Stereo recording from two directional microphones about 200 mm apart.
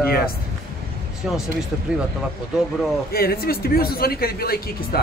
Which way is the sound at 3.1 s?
50° left (ahead or behind).